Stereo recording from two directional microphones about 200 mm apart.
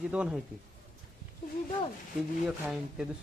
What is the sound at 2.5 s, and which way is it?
Speech, 5° right (ahead or behind).